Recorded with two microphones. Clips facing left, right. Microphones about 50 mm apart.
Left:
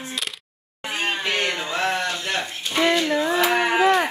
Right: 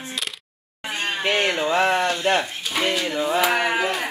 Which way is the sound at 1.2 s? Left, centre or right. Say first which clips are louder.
Right 3 dB; centre.